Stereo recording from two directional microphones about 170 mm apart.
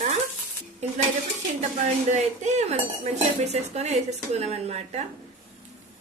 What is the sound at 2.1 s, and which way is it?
Speech, 40° right (ahead or behind).